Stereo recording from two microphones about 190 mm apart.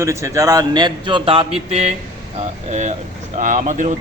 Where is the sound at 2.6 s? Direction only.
40° right (ahead or behind).